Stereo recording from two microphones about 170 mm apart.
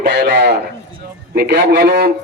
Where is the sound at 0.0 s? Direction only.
80° right.